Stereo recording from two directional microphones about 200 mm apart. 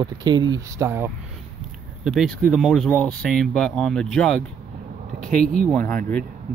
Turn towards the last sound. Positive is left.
turn(degrees=10)  # may be behind; listen again after turning